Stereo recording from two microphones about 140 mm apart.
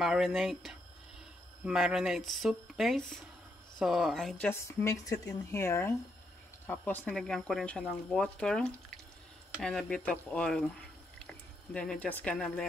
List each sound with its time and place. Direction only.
0.0 s speech: 5° right (ahead or behind)
4.5 s speech: 20° left (ahead or behind)